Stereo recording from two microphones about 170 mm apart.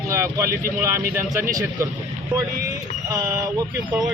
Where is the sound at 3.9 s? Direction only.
5° right (ahead or behind).